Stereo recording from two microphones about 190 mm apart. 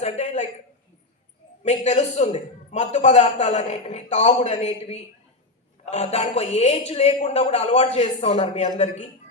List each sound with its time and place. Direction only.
0.0 s a man's voice: 35° left (ahead or behind)
1.6 s a man's voice: 35° left (ahead or behind)